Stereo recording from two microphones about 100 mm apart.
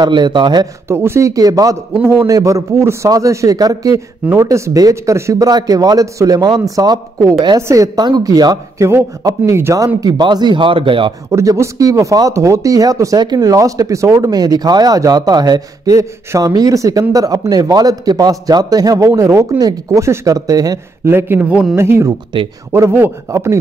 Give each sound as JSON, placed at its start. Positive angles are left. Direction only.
{"t": 0.0, "sound": "speech", "side_deg": -50}
{"t": 0.8, "sound": "speech", "side_deg": -25}
{"t": 8.8, "sound": "a man's voice", "side_deg": -30}
{"t": 9.9, "sound": "speech", "side_deg": -40}
{"t": 11.3, "sound": "speech", "side_deg": -30}
{"t": 21.1, "sound": "a man's voice", "side_deg": -20}
{"t": 21.7, "sound": "a man's voice", "side_deg": -25}